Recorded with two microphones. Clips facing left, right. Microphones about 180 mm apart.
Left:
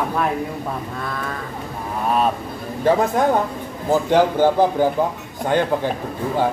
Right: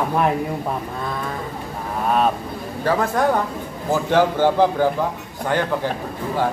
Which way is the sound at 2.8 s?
20° left (ahead or behind).